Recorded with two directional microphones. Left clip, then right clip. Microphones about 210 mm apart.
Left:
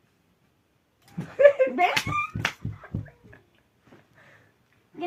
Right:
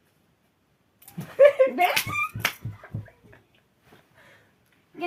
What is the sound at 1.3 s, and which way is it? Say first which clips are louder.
Speech: right 1 dB; 35° right (ahead or behind).